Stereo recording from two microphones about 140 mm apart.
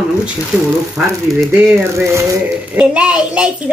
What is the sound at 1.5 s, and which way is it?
A man's voice, 15° right (ahead or behind).